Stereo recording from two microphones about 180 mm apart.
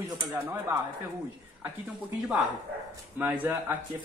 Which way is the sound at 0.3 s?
15° right (ahead or behind).